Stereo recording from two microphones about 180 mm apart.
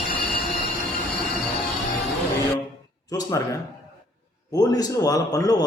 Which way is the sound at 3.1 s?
20° left (ahead or behind).